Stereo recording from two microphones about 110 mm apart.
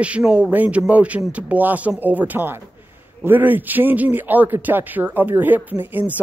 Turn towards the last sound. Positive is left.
turn(degrees=-15)  # may be behind; listen again after turning